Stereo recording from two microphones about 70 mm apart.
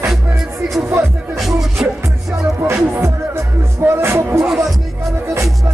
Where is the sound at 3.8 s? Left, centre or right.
Right.